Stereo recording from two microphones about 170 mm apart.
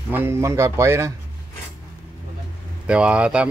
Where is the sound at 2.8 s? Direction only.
5° right (ahead or behind).